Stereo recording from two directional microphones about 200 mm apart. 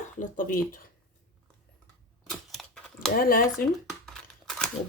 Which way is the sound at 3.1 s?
45° left (ahead or behind).